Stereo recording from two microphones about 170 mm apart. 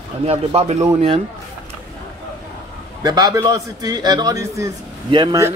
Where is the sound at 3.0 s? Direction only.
20° right (ahead or behind).